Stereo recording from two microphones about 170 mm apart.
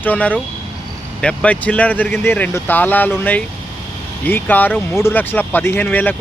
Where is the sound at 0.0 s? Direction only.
10° left (ahead or behind).